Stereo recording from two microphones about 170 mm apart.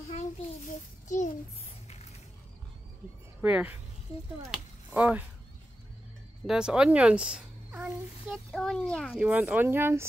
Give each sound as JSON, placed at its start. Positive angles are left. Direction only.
{"t": 0.7, "sound": "a child's voice", "side_deg": 45}
{"t": 3.3, "sound": "speech", "side_deg": -10}
{"t": 6.4, "sound": "speech", "side_deg": -5}